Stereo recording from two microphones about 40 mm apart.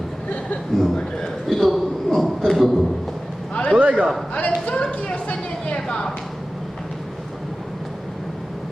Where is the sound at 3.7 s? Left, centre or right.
Right.